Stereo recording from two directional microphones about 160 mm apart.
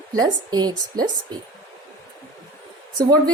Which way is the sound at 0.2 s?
25° right (ahead or behind).